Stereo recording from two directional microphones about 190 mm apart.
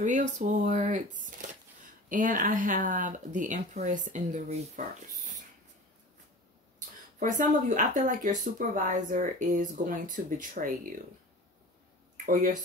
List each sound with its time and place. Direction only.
0.4 s speech: 45° right (ahead or behind)
2.0 s speech: 45° right (ahead or behind)
7.2 s speech: 45° right (ahead or behind)
12.3 s speech: 45° right (ahead or behind)